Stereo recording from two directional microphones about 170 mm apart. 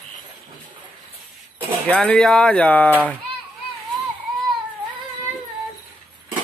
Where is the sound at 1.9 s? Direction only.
5° left (ahead or behind).